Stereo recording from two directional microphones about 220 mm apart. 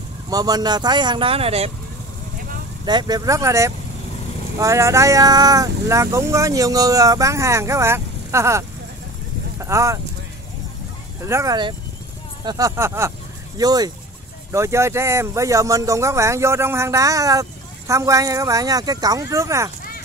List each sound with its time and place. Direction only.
0.3 s speech: 15° right (ahead or behind)
2.8 s speech: 20° right (ahead or behind)
11.2 s speech: 15° right (ahead or behind)